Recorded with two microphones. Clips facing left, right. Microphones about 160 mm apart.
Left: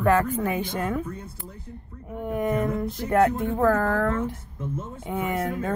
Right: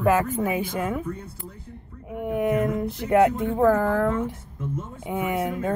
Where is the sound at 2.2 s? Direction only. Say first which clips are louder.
Right 2 dB; 10° right (ahead or behind).